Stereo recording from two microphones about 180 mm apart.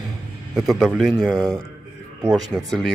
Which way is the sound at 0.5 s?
Centre (ahead or behind).